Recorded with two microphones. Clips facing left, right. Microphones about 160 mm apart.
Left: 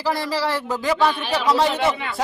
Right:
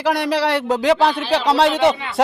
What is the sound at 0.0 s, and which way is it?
A woman's voice, 70° right (ahead or behind).